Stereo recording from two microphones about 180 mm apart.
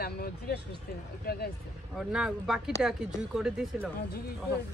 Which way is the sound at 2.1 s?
5° right (ahead or behind).